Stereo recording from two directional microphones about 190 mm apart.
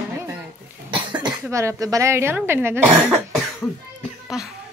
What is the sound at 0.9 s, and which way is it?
Cough, 25° right (ahead or behind).